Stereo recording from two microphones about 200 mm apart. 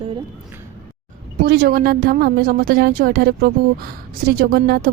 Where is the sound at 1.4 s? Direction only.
55° right (ahead or behind).